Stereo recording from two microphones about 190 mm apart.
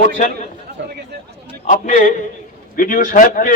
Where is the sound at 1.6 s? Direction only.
40° left (ahead or behind).